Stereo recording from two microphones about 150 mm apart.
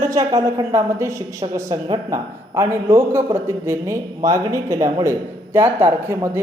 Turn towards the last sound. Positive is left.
turn(degrees=-15)  # may be behind; listen again after turning